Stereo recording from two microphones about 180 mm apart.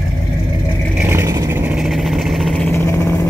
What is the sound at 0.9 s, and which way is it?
Vehicle, 15° right (ahead or behind).